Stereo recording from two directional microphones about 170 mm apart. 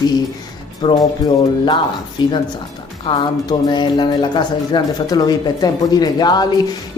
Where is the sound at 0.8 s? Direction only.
25° left (ahead or behind).